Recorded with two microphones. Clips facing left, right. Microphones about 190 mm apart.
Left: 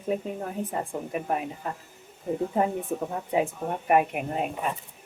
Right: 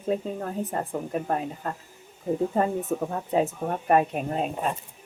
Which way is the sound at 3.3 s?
15° left (ahead or behind).